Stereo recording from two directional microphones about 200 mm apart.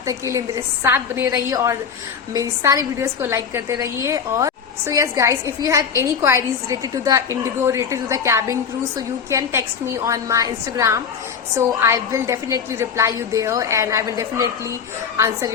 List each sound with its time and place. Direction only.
0.0 s a woman's voice: 15° right (ahead or behind)